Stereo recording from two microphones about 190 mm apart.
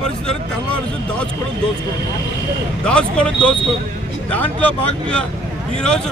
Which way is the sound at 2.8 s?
5° left (ahead or behind).